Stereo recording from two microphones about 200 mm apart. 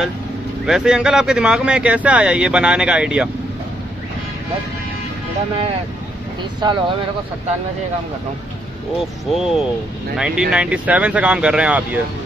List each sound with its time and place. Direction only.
0.7 s speech: 5° right (ahead or behind)
6.6 s speech: 25° right (ahead or behind)
9.3 s speech: centre (ahead or behind)